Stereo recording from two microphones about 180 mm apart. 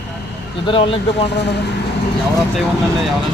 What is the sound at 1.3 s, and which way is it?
Speech, 70° left (ahead or behind).